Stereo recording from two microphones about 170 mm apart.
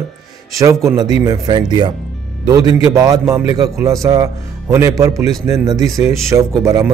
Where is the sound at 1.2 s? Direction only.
25° right (ahead or behind).